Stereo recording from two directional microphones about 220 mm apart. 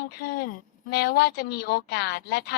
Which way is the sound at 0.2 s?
45° left (ahead or behind).